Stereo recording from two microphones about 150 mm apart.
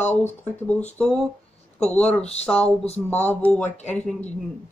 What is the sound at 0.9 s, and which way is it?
Speech, 10° left (ahead or behind).